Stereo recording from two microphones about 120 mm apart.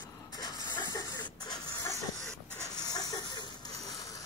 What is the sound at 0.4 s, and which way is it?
Printer, 35° left (ahead or behind).